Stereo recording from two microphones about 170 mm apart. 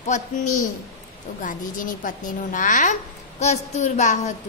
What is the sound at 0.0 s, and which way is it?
A woman's voice, 45° left (ahead or behind).